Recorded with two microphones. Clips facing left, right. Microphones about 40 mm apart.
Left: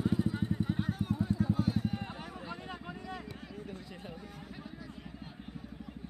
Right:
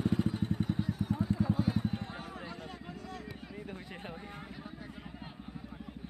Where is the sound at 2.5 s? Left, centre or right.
Left.